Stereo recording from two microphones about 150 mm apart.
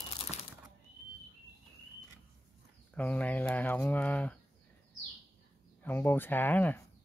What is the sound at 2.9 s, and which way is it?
Speech, 10° left (ahead or behind).